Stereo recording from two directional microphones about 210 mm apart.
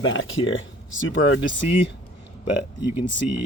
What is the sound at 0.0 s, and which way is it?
Speech, 70° left (ahead or behind).